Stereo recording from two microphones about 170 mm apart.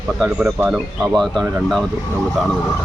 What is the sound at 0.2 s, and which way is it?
Speech, centre (ahead or behind).